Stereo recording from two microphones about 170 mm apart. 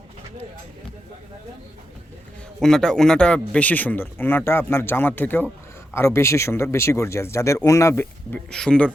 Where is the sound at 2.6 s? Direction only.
5° left (ahead or behind).